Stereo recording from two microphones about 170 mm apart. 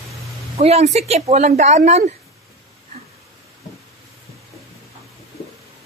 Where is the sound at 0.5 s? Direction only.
35° right (ahead or behind).